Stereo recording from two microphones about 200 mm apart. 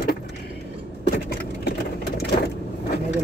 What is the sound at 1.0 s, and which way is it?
Vehicle, 50° left (ahead or behind).